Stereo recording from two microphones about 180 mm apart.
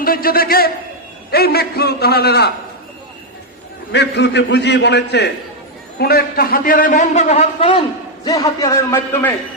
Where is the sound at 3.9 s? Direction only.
70° left (ahead or behind); by 7.8 s 35° left (ahead or behind).